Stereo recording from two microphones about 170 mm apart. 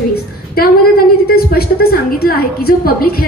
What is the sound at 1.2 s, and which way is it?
A woman's voice, 65° left (ahead or behind).